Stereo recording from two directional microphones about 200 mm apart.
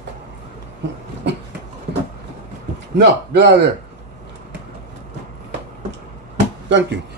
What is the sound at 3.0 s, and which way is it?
Speech, 60° right (ahead or behind).